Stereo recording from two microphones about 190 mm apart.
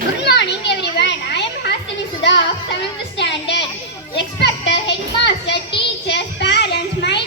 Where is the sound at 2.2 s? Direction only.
65° left (ahead or behind).